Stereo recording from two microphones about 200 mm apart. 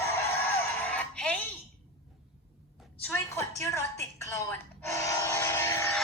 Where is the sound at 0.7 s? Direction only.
5° left (ahead or behind).